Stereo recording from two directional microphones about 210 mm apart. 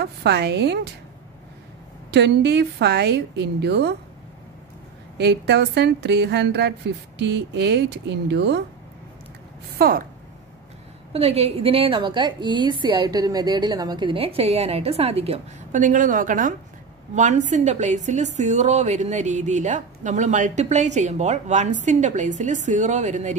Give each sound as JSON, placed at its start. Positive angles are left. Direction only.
{"t": 0.0, "sound": "a woman's voice", "side_deg": -50}
{"t": 2.0, "sound": "a woman's voice", "side_deg": -55}
{"t": 5.1, "sound": "a woman's voice", "side_deg": -50}
{"t": 9.8, "sound": "a woman's voice", "side_deg": -45}
{"t": 11.1, "sound": "a woman's voice", "side_deg": -30}